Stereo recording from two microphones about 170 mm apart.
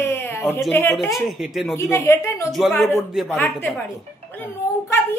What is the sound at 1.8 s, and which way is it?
Speech, 15° left (ahead or behind).